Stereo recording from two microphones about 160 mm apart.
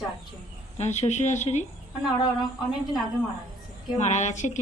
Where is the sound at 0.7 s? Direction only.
45° left (ahead or behind).